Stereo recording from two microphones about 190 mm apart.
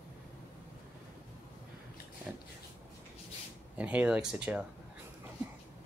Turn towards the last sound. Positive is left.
turn(degrees=-5)  # may be behind; listen again after turning